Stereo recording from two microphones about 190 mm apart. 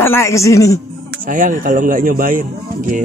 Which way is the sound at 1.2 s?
45° right (ahead or behind).